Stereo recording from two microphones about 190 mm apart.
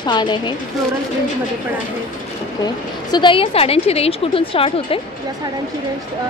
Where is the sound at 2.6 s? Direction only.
25° left (ahead or behind).